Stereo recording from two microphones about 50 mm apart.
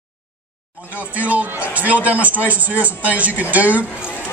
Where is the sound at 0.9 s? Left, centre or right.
Right.